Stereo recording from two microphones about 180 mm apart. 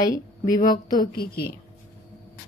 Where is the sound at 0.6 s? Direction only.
50° left (ahead or behind).